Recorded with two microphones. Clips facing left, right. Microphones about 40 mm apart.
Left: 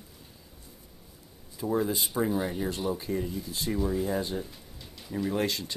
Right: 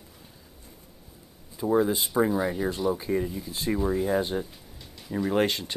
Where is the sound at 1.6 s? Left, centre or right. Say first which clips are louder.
Right 5 dB; centre.